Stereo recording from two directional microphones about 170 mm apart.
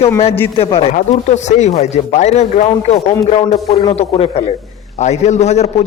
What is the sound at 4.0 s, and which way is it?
Speech, 35° left (ahead or behind).